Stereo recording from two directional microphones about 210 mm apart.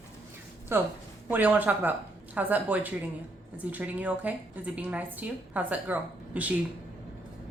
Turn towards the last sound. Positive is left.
turn(degrees=-5)  # may be behind; listen again after turning